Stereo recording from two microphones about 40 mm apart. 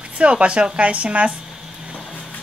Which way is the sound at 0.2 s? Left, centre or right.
Right.